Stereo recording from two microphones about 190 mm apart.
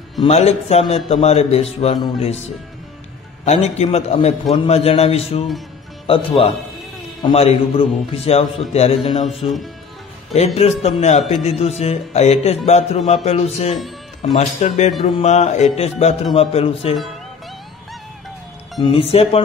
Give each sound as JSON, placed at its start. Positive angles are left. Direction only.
{"t": 0.2, "sound": "speech", "side_deg": 35}
{"t": 3.4, "sound": "speech", "side_deg": 35}
{"t": 18.8, "sound": "speech", "side_deg": 25}